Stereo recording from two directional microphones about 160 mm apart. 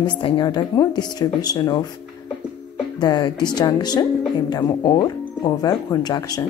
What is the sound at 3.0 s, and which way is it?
A woman's voice, 25° left (ahead or behind).